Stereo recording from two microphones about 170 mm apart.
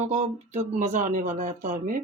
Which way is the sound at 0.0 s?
45° right (ahead or behind).